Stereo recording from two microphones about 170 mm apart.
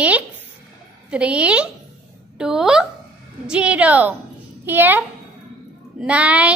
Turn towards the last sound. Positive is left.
turn(degrees=-10)  # may be behind; listen again after turning